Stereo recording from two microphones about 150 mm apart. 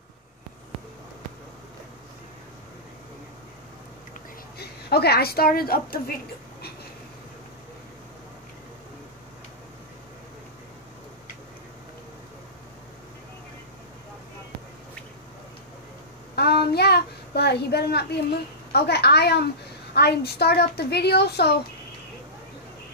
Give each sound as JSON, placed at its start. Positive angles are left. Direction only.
{"t": 4.6, "sound": "a woman's voice", "side_deg": 90}
{"t": 16.3, "sound": "child singing", "side_deg": 90}
{"t": 18.7, "sound": "a woman's voice", "side_deg": 90}